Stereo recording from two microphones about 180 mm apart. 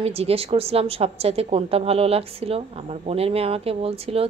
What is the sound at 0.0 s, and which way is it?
A woman's voice, 35° right (ahead or behind).